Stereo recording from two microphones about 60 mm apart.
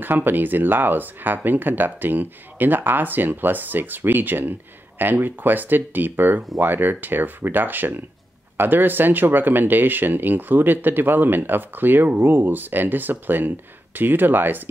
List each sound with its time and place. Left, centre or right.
0.0 s speech: right